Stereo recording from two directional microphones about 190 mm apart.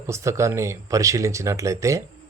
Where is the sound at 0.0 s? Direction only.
15° right (ahead or behind).